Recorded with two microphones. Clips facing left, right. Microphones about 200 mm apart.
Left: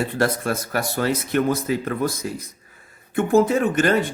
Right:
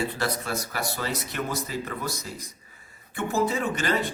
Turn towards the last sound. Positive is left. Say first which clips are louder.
# left 8 dB
turn(degrees=55)  # may be behind; listen again after turning